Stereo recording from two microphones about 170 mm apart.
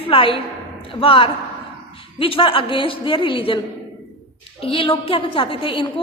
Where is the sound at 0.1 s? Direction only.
30° left (ahead or behind).